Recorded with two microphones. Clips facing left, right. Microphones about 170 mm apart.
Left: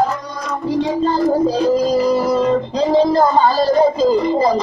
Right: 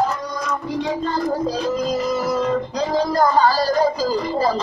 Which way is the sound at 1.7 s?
35° left (ahead or behind).